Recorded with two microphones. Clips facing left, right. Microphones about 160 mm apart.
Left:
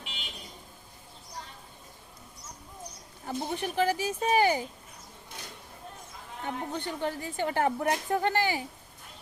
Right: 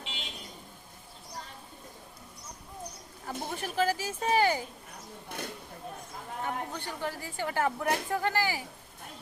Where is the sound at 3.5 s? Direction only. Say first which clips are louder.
Left 1 dB; 20° left (ahead or behind).